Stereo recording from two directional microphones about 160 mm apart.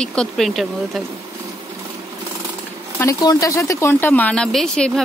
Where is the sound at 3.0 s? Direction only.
20° left (ahead or behind).